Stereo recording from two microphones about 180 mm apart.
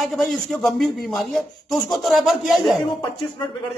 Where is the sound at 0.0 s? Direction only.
Centre (ahead or behind).